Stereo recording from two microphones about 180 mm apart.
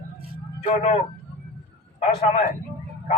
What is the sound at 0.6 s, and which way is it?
Speech, 40° left (ahead or behind).